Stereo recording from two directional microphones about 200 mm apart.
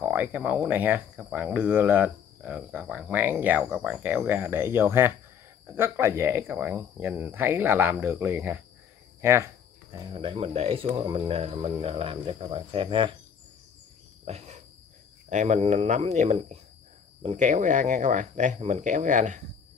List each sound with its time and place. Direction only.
0.0 s speech: 10° right (ahead or behind)
9.8 s speech: 25° right (ahead or behind)
14.2 s cricket: 35° right (ahead or behind)
15.2 s speech: 35° right (ahead or behind)